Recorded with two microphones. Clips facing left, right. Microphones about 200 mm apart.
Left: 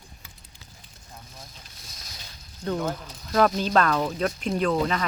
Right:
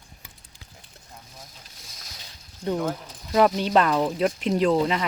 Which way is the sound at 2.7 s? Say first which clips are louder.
Right 1 dB; centre (ahead or behind).